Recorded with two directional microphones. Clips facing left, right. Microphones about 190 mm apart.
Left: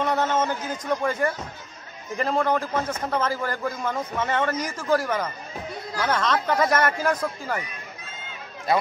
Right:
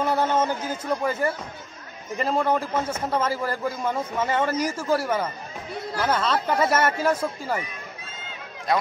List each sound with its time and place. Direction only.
0.0 s a man's voice: 10° right (ahead or behind)
8.7 s speech: 5° left (ahead or behind)